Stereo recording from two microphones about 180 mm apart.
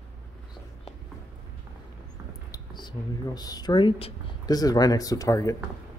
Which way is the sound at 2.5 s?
25° left (ahead or behind).